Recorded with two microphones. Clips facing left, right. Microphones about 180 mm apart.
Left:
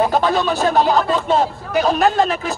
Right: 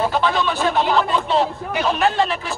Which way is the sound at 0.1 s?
40° left (ahead or behind).